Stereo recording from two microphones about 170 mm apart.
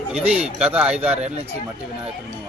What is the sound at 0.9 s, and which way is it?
Speech, 35° right (ahead or behind).